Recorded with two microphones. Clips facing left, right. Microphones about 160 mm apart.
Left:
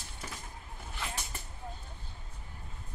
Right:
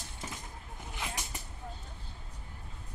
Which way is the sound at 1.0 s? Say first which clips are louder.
Even; 15° right (ahead or behind).